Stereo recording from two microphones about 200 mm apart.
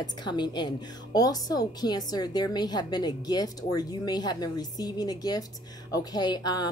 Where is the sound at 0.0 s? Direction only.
20° left (ahead or behind).